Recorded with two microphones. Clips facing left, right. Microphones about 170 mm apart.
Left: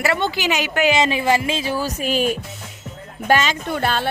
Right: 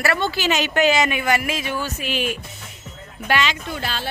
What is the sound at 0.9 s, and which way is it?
A woman's voice, 30° left (ahead or behind).